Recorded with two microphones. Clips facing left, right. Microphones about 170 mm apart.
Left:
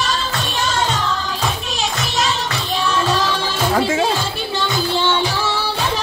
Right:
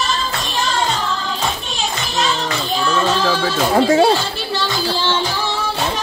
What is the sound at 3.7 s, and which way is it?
Music, 35° right (ahead or behind).